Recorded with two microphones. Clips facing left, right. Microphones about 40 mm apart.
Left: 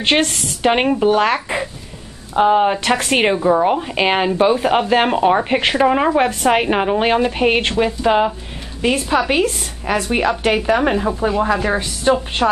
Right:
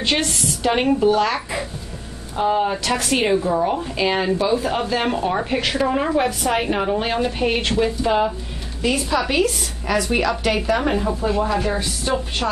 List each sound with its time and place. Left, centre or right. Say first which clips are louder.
0.0 s a woman's voice: left 4 dB; left